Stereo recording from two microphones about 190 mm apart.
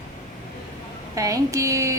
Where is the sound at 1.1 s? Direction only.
15° right (ahead or behind).